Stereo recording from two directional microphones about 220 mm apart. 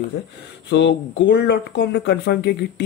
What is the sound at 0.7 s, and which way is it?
Speech, 50° left (ahead or behind).